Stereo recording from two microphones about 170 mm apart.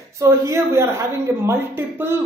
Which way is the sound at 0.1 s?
15° right (ahead or behind).